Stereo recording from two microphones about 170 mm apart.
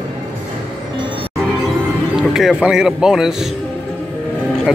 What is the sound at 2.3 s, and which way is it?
A man's voice, 5° right (ahead or behind).